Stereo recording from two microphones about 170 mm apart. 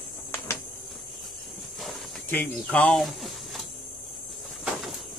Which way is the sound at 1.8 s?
10° left (ahead or behind).